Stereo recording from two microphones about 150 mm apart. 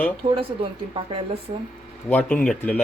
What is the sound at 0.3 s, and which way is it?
Speech, 35° right (ahead or behind).